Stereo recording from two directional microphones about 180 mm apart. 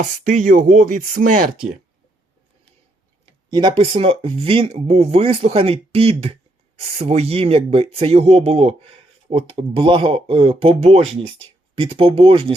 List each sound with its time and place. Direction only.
0.0 s chopping: 45° right (ahead or behind)
3.5 s speech: 25° right (ahead or behind)